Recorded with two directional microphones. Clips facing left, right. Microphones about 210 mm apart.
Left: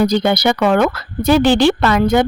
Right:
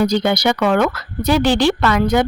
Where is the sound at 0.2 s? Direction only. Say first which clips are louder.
Left 2 dB; 35° left (ahead or behind).